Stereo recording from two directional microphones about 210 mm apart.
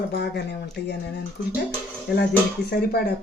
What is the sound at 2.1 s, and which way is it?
Speech, 50° left (ahead or behind).